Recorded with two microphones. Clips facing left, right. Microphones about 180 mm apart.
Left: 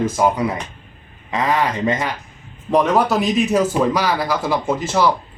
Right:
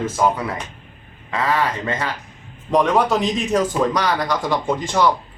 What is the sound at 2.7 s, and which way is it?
A man's voice, 5° left (ahead or behind).